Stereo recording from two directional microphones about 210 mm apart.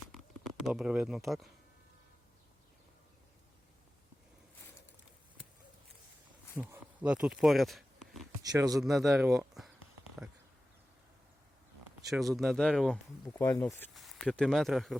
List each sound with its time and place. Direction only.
0.1 s a sound: centre (ahead or behind)
6.6 s speech: 5° right (ahead or behind)
8.5 s speech: 15° right (ahead or behind)
8.8 s speech: centre (ahead or behind)
12.0 s speech: centre (ahead or behind)